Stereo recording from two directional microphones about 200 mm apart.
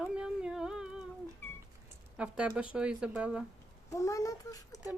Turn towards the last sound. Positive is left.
turn(degrees=15)  # may be behind; listen again after turning